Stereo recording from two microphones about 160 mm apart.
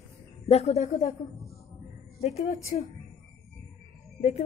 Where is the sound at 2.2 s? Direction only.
45° left (ahead or behind).